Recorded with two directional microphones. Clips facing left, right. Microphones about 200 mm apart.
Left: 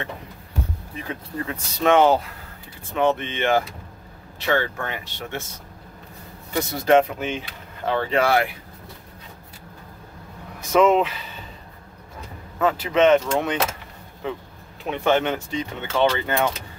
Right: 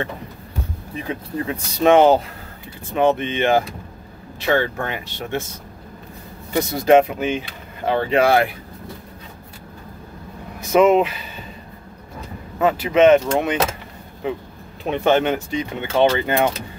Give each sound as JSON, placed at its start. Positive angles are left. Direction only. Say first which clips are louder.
{"t": 1.0, "sound": "speech", "louder": "right 5 dB", "side_deg": -20}
{"t": 6.5, "sound": "speech", "louder": "right 4 dB", "side_deg": -15}
{"t": 10.7, "sound": "speech", "louder": "right 3 dB", "side_deg": -10}
{"t": 12.5, "sound": "speech", "louder": "right 4 dB", "side_deg": -10}
{"t": 14.9, "sound": "speech", "louder": "right 3 dB", "side_deg": -20}